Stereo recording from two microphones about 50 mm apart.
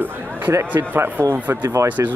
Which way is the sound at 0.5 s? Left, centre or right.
Right.